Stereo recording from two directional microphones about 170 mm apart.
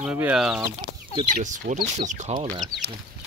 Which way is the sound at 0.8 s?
25° right (ahead or behind).